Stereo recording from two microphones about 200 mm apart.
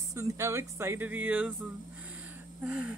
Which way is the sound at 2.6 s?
5° right (ahead or behind).